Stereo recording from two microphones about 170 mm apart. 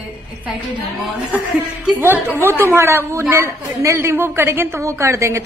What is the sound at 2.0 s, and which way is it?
Speech, 15° right (ahead or behind).